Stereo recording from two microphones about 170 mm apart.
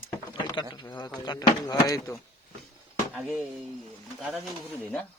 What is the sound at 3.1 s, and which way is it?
Speech, 10° right (ahead or behind).